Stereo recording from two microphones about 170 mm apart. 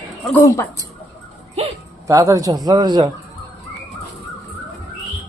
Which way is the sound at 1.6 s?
40° right (ahead or behind).